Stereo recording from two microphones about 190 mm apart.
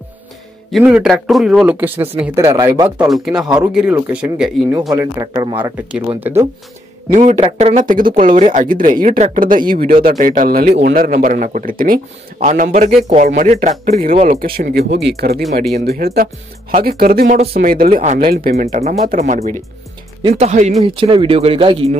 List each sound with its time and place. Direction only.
0.8 s speech: 5° right (ahead or behind)
3.1 s speech: centre (ahead or behind)
5.2 s speech: 20° right (ahead or behind)
5.6 s speech: 5° right (ahead or behind)
7.1 s speech: 40° right (ahead or behind)
18.5 s speech: 35° right (ahead or behind)